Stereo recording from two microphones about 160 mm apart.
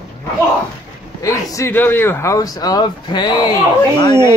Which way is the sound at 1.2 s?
15° left (ahead or behind).